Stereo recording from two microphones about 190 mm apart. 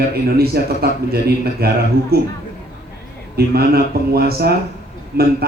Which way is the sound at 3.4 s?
55° right (ahead or behind).